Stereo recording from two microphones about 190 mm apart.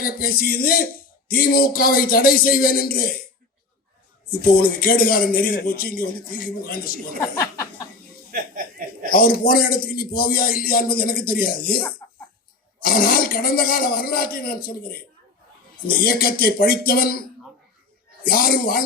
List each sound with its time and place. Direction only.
0.0 s a man's voice: 50° left (ahead or behind)
4.3 s a man's voice: 50° left (ahead or behind)
7.2 s speech: 15° left (ahead or behind)
8.3 s chuckle: 45° right (ahead or behind)
9.0 s a man's voice: 50° left (ahead or behind)
12.0 s cough: 20° left (ahead or behind)
12.8 s a man's voice: 50° left (ahead or behind)
16.0 s a man's voice: 50° left (ahead or behind)